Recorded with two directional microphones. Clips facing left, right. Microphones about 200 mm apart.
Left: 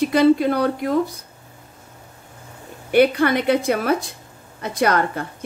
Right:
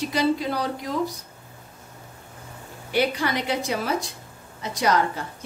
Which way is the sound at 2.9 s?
55° left (ahead or behind).